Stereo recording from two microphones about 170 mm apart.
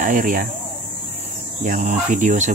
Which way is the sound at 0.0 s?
50° right (ahead or behind).